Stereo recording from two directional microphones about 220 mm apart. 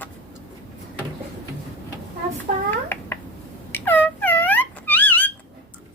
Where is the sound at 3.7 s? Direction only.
10° left (ahead or behind).